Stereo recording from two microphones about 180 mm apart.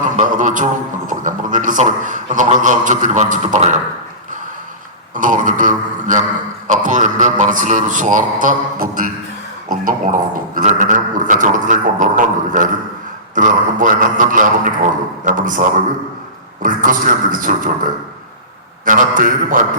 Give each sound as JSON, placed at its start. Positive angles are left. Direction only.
{"t": 0.2, "sound": "a man's voice", "side_deg": -45}
{"t": 5.1, "sound": "a sound", "side_deg": -45}
{"t": 6.7, "sound": "a man's voice", "side_deg": -45}
{"t": 16.6, "sound": "a man's voice", "side_deg": -50}
{"t": 18.9, "sound": "a man's voice", "side_deg": -50}